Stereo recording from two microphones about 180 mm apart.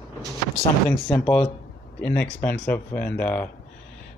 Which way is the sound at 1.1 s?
5° left (ahead or behind).